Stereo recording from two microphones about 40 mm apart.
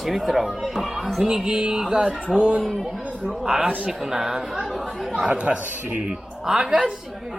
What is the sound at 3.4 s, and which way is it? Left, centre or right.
Speech, centre.